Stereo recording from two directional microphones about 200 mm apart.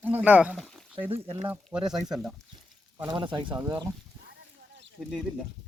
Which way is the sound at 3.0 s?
20° right (ahead or behind).